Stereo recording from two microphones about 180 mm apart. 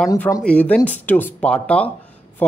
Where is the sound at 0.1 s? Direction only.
20° left (ahead or behind).